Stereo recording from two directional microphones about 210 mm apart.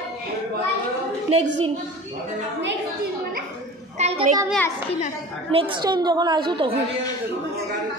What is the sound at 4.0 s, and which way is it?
Speech, 30° right (ahead or behind).